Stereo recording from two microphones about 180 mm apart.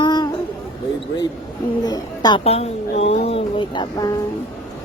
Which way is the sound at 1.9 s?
20° left (ahead or behind).